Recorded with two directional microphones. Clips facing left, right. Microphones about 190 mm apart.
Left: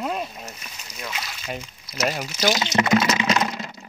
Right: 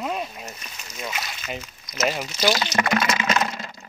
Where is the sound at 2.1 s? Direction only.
10° left (ahead or behind).